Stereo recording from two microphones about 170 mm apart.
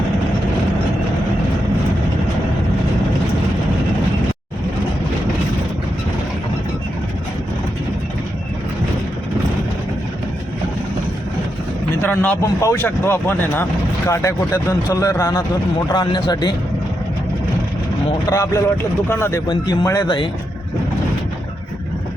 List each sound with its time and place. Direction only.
12.0 s speech: 10° left (ahead or behind)
18.3 s speech: 20° left (ahead or behind)